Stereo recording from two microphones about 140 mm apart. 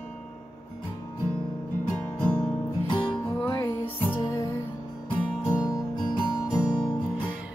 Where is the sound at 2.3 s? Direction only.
35° left (ahead or behind).